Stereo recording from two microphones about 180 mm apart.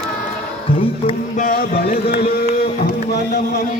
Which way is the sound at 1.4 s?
50° left (ahead or behind).